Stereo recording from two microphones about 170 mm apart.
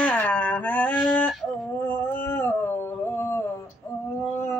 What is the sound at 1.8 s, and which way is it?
Dog, 10° left (ahead or behind).